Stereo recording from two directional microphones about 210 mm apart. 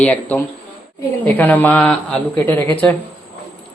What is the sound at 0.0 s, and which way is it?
Speech, 10° left (ahead or behind).